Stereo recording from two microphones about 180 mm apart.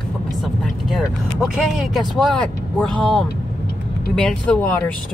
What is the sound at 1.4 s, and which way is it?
Speech, centre (ahead or behind).